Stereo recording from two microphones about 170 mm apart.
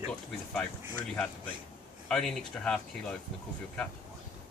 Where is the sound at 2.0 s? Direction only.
5° left (ahead or behind).